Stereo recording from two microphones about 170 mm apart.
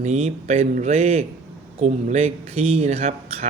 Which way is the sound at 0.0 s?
40° right (ahead or behind).